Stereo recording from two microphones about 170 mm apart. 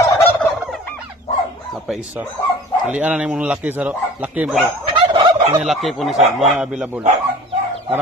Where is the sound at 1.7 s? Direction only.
Centre (ahead or behind).